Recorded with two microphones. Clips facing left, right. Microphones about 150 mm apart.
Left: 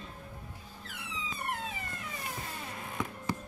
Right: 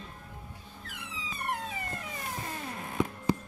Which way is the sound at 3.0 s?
20° right (ahead or behind).